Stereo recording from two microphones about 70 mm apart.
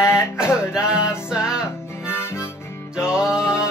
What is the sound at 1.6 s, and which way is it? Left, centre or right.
Harmonica, left.